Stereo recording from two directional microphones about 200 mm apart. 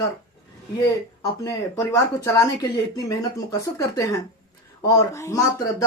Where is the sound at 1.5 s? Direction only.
15° left (ahead or behind).